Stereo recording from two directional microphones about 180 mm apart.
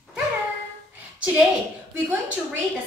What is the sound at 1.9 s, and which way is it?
Speech, 10° right (ahead or behind).